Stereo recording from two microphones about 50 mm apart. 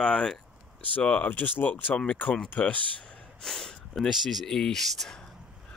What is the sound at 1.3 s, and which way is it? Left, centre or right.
Speech, left.